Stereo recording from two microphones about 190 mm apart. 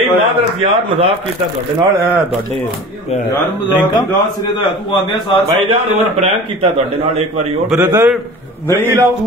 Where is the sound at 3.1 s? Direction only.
35° left (ahead or behind).